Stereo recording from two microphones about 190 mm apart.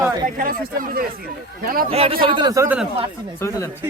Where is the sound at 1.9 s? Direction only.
30° right (ahead or behind).